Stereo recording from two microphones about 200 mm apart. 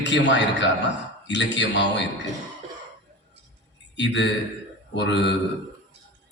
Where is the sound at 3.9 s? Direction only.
60° left (ahead or behind).